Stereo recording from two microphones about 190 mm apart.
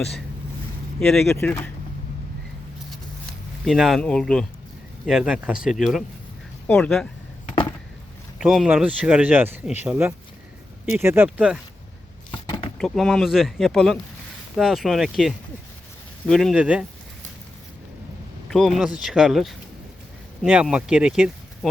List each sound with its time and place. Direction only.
0.9 s speech: centre (ahead or behind)
3.7 s speech: centre (ahead or behind)
8.4 s speech: 5° right (ahead or behind)
12.3 s a sound: 25° left (ahead or behind)
12.8 s speech: centre (ahead or behind)
18.5 s speech: centre (ahead or behind)